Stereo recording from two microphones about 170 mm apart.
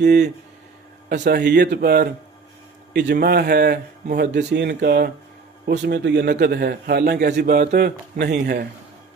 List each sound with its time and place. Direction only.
0.0 s speech: 75° right (ahead or behind)
1.0 s speech: 65° right (ahead or behind)
2.9 s speech: 80° right
5.7 s speech: 80° right
6.4 s speech: 65° right (ahead or behind)